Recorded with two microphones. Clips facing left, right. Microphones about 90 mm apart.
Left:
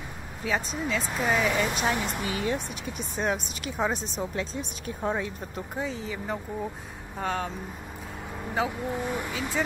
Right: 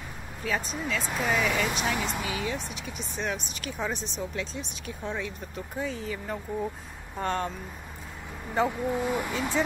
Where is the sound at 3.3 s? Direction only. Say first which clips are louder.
Left 5 dB; 30° left (ahead or behind).